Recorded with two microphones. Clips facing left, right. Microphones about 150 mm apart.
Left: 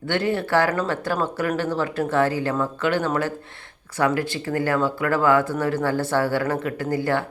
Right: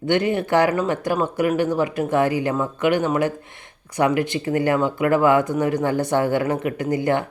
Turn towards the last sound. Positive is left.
turn(degrees=-20)  # may be behind; listen again after turning